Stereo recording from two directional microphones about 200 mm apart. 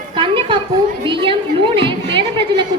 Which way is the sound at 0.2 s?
25° right (ahead or behind).